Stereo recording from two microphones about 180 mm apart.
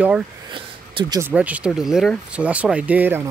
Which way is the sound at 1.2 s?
10° right (ahead or behind).